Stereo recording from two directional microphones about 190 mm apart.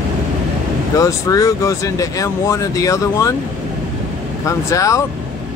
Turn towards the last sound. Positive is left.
turn(degrees=15)  # may be behind; listen again after turning